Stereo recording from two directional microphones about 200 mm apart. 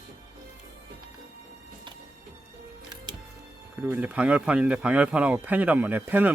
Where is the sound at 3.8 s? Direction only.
5° right (ahead or behind).